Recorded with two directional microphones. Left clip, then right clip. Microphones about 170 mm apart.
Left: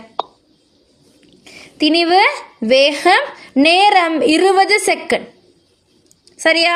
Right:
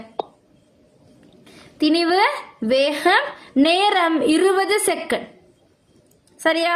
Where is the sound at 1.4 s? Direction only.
30° left (ahead or behind).